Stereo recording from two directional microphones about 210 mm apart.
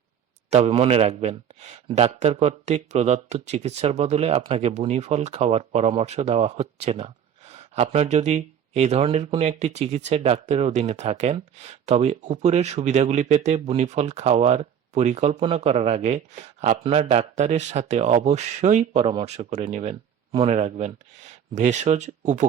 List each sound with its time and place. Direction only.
0.5 s speech: 30° right (ahead or behind)